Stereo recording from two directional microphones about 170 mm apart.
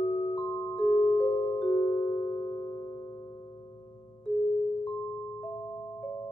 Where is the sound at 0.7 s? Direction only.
10° left (ahead or behind).